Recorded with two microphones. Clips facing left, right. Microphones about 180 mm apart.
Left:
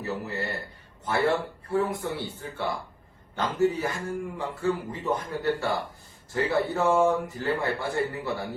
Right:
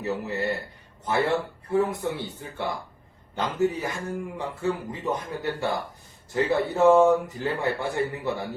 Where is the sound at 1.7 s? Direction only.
20° right (ahead or behind).